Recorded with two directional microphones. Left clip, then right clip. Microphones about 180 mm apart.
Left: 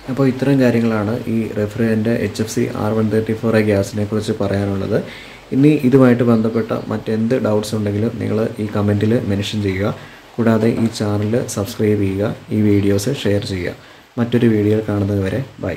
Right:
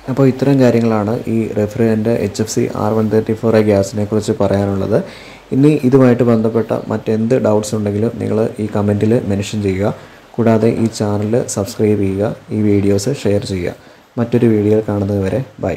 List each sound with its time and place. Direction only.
0.2 s speech: 25° right (ahead or behind)